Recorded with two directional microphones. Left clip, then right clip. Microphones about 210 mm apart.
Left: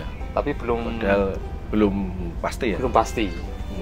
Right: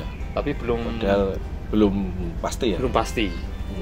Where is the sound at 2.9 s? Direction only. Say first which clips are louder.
Left 7 dB; 15° right (ahead or behind).